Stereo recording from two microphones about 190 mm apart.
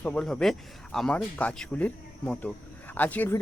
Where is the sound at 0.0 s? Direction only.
5° left (ahead or behind).